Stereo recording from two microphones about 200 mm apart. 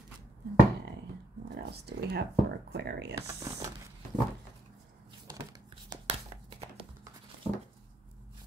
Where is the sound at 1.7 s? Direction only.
55° right (ahead or behind).